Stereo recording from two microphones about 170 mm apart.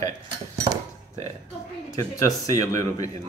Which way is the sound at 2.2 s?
20° left (ahead or behind).